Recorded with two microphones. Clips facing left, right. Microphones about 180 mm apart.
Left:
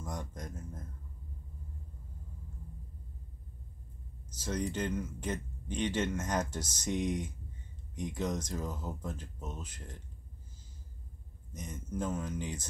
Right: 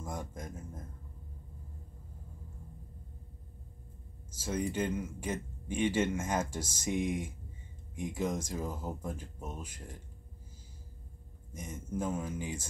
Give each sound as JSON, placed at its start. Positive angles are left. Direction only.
{"t": 0.0, "sound": "speech", "side_deg": -10}
{"t": 4.4, "sound": "speech", "side_deg": -10}
{"t": 11.5, "sound": "speech", "side_deg": -10}